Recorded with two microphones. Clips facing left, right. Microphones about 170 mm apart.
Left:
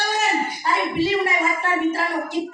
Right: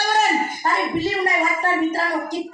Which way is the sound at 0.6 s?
40° right (ahead or behind).